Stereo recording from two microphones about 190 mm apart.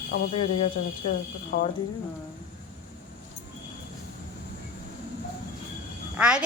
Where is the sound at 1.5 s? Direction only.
50° left (ahead or behind).